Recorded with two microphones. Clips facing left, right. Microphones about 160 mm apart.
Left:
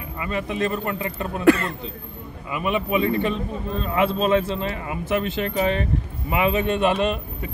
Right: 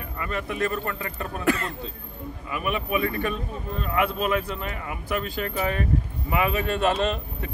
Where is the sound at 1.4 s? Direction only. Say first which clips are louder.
Left 8 dB; 70° left (ahead or behind).